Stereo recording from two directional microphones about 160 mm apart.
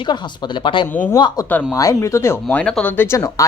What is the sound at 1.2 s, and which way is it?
A woman's voice, 30° left (ahead or behind).